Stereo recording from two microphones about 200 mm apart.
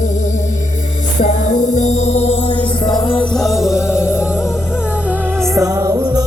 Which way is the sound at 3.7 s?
15° left (ahead or behind).